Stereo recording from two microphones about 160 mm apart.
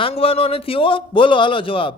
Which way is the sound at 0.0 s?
35° left (ahead or behind).